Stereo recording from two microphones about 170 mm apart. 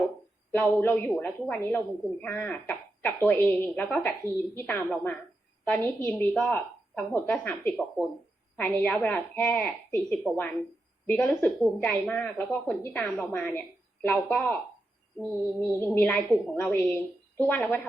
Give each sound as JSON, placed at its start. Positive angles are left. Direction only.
{"t": 0.5, "sound": "a woman's voice", "side_deg": 10}